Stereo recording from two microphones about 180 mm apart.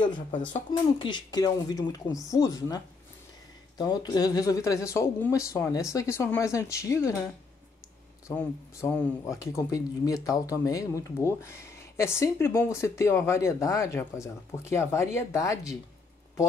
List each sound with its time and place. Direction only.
0.0 s speech: 25° left (ahead or behind)
8.3 s speech: 15° left (ahead or behind)